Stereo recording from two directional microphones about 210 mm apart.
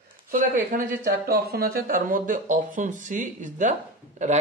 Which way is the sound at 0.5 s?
40° right (ahead or behind).